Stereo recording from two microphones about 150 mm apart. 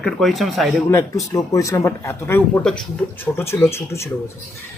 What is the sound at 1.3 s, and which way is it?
A man's voice, 20° left (ahead or behind).